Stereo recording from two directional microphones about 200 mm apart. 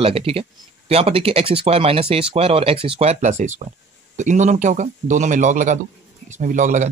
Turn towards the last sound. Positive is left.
turn(degrees=-40)  # may be behind; listen again after turning